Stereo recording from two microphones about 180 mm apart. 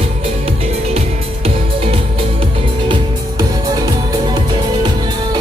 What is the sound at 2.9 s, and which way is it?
Music, 20° right (ahead or behind).